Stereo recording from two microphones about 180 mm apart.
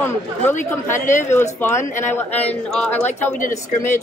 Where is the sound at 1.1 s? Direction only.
40° left (ahead or behind).